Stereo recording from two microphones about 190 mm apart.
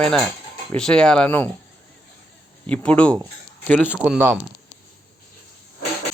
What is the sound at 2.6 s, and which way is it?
Speech, 5° left (ahead or behind).